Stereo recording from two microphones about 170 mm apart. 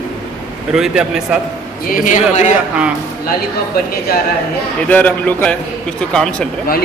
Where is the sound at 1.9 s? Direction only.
50° left (ahead or behind).